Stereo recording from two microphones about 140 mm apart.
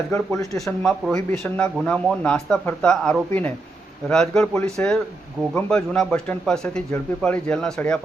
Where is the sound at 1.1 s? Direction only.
15° left (ahead or behind).